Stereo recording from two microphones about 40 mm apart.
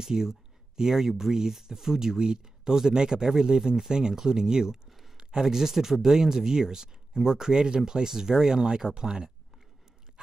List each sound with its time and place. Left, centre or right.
0.0 s speech: centre
4.8 s a sound: centre
5.1 s speech: centre